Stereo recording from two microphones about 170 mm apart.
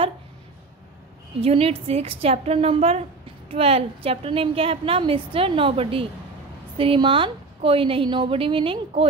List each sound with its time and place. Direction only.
1.4 s a woman's voice: 35° right (ahead or behind)